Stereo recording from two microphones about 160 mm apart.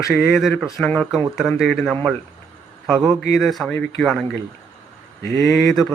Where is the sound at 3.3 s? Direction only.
Centre (ahead or behind).